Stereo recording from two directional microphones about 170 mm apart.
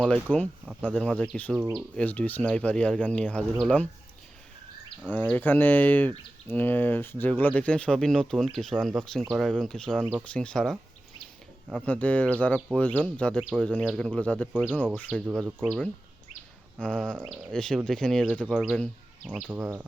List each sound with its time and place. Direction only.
0.0 s speech: 5° left (ahead or behind)
0.6 s speech: 5° right (ahead or behind)
0.9 s speech: 5° left (ahead or behind)
1.5 s speech: 15° right (ahead or behind)
2.0 s speech: 10° left (ahead or behind)
5.1 s speech: 10° left (ahead or behind)
14.5 s speech: 5° right (ahead or behind)
16.8 s speech: 5° left (ahead or behind)